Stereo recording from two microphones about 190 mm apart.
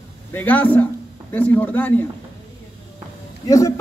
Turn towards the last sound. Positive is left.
turn(degrees=15)  # may be behind; listen again after turning